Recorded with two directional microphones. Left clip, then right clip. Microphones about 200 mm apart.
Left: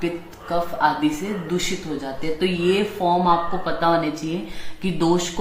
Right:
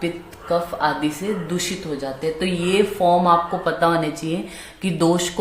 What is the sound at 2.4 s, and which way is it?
Speech, 45° right (ahead or behind).